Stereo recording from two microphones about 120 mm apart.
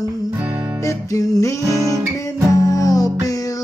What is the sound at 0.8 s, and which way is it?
Music, 25° left (ahead or behind).